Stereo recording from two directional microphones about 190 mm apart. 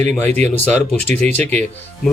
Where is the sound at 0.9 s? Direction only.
10° left (ahead or behind).